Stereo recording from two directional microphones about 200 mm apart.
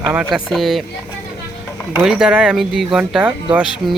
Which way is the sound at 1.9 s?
5° right (ahead or behind).